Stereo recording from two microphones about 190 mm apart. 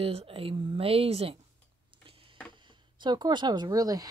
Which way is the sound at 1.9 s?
25° right (ahead or behind).